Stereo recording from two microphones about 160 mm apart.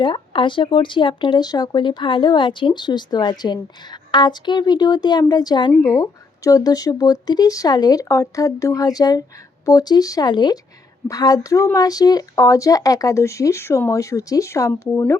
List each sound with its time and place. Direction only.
0.0 s speech: 30° left (ahead or behind)